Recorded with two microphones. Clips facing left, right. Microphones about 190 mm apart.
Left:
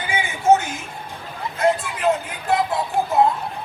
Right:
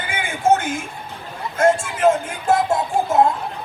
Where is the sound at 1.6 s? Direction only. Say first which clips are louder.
Right 4 dB; 45° right (ahead or behind).